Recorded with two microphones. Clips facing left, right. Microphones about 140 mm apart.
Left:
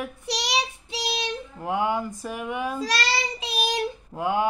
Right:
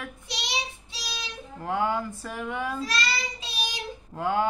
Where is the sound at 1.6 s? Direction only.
15° left (ahead or behind).